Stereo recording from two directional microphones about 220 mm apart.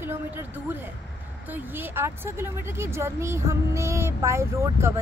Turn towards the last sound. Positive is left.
turn(degrees=-10)  # may be behind; listen again after turning